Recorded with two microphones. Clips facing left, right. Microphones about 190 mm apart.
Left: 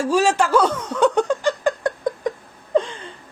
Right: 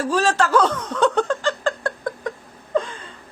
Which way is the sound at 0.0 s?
10° left (ahead or behind).